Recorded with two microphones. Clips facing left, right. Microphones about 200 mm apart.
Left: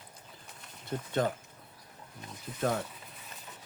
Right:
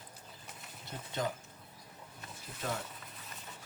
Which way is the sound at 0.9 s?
55° left (ahead or behind).